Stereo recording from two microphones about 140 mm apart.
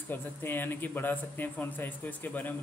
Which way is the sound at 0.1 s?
15° left (ahead or behind).